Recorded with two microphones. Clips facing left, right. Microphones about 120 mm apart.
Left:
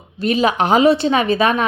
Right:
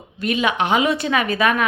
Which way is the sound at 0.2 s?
30° left (ahead or behind).